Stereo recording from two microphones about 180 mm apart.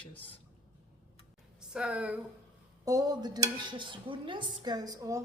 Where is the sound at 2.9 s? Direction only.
20° right (ahead or behind).